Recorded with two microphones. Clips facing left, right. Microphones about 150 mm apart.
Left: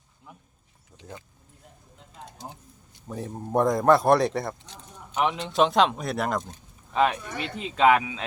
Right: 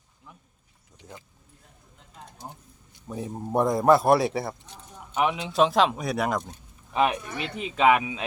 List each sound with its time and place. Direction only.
2.4 s a man's voice: 5° left (ahead or behind)
3.1 s a man's voice: 5° right (ahead or behind)
6.9 s speech: 15° right (ahead or behind)